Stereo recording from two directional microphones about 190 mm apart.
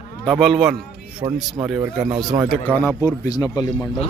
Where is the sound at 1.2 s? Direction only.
20° right (ahead or behind).